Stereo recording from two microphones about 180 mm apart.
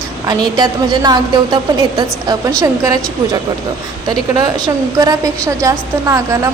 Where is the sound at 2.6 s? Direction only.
20° right (ahead or behind).